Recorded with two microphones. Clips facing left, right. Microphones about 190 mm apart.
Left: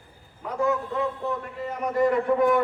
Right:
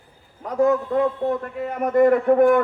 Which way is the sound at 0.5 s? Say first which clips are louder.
Right 7 dB; 45° right (ahead or behind).